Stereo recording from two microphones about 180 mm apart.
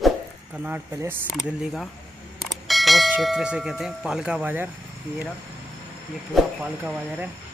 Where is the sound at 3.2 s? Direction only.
5° right (ahead or behind).